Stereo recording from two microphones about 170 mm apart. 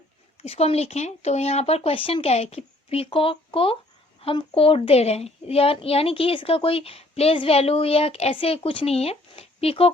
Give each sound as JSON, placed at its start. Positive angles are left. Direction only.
{"t": 0.4, "sound": "a child's voice", "side_deg": 35}